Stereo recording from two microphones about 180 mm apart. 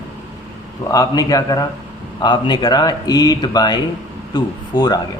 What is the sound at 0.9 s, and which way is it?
Speech, 20° left (ahead or behind).